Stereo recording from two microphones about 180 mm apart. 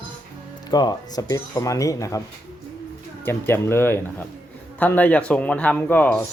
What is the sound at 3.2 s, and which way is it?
Speech, 15° left (ahead or behind).